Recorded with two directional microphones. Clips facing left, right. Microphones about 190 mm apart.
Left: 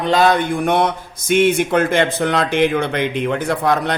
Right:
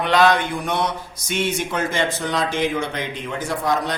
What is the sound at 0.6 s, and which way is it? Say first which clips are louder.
A man's voice: left 6 dB; 55° left (ahead or behind).